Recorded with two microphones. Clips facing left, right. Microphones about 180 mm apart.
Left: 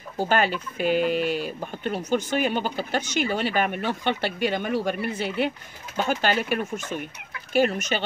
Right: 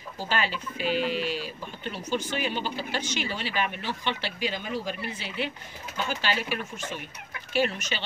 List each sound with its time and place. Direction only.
0.2 s speech: 55° left (ahead or behind)